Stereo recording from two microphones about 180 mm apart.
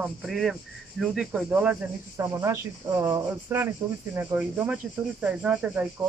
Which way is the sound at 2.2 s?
15° right (ahead or behind).